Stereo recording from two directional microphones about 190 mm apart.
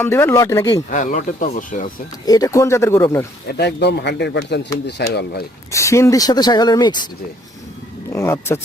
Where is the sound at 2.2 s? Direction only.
20° left (ahead or behind).